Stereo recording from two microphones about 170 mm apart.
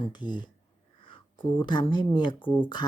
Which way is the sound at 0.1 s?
25° left (ahead or behind).